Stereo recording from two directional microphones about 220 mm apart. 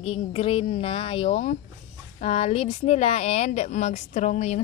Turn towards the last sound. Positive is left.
turn(degrees=30)  # may be behind; listen again after turning